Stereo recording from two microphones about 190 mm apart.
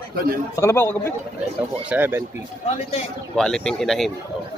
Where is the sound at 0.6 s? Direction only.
15° left (ahead or behind).